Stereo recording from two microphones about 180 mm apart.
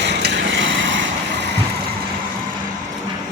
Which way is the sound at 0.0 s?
70° right (ahead or behind).